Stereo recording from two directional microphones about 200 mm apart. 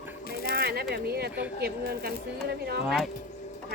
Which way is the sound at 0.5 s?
50° right (ahead or behind).